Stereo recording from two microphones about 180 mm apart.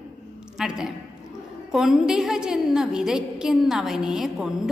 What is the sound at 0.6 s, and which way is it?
A woman's voice, 5° right (ahead or behind).